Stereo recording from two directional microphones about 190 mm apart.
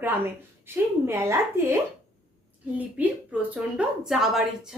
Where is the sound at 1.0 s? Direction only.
15° right (ahead or behind).